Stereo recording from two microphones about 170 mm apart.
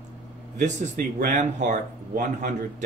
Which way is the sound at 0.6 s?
50° right (ahead or behind).